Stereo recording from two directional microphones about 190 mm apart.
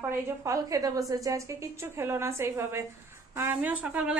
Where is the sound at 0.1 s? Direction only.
15° right (ahead or behind).